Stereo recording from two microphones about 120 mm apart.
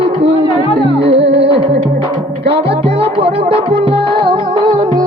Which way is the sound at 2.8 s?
50° right (ahead or behind).